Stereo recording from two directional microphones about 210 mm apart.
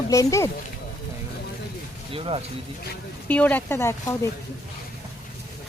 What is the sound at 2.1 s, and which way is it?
Speech, 25° right (ahead or behind).